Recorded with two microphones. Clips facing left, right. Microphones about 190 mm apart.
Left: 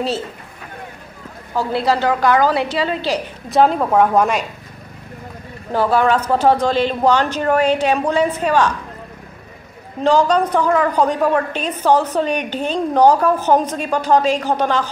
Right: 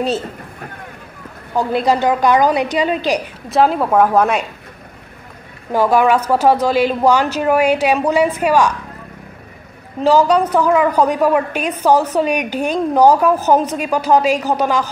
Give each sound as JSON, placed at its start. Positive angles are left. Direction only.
{"t": 1.5, "sound": "a woman's voice", "side_deg": -20}
{"t": 3.4, "sound": "a woman's voice", "side_deg": 0}
{"t": 5.7, "sound": "a woman's voice", "side_deg": -10}
{"t": 10.0, "sound": "a woman's voice", "side_deg": -10}